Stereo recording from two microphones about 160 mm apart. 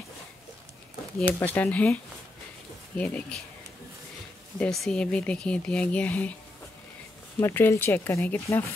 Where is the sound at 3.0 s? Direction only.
10° left (ahead or behind).